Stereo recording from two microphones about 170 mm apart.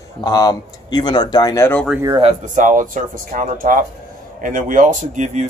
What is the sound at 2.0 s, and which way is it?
Speech, 25° right (ahead or behind).